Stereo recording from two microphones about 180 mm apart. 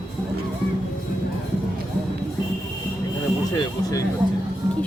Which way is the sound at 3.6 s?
20° left (ahead or behind).